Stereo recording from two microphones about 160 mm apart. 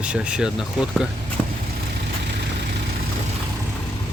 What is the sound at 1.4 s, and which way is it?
Vehicle, 15° left (ahead or behind).